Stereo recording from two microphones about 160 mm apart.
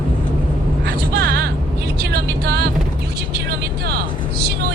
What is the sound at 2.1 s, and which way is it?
Music, 80° right.